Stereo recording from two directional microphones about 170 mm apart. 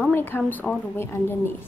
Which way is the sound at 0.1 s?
10° left (ahead or behind).